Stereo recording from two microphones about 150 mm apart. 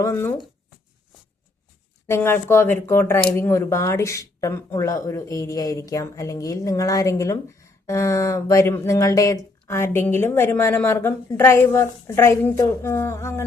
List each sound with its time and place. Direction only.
0.0 s speech: 15° left (ahead or behind)
2.0 s speech: 15° left (ahead or behind)